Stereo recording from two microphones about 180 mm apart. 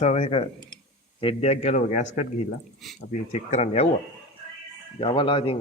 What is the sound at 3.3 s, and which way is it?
Speech, 40° left (ahead or behind).